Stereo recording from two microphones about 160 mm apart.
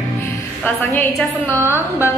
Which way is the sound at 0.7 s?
10° left (ahead or behind).